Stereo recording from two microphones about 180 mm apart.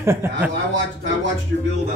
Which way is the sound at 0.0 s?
15° right (ahead or behind).